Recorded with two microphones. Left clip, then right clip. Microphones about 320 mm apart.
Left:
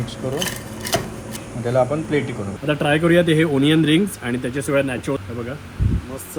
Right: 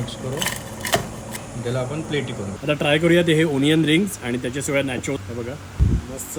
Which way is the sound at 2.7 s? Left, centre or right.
Centre.